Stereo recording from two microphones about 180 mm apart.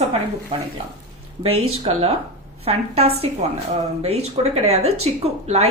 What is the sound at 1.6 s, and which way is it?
Speech, 30° right (ahead or behind).